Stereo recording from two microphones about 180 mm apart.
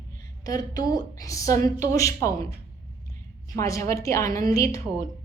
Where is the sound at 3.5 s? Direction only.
15° left (ahead or behind).